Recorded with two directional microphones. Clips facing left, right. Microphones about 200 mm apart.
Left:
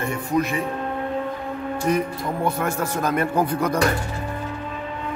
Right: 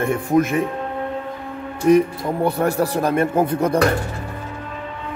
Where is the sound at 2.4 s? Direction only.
35° right (ahead or behind).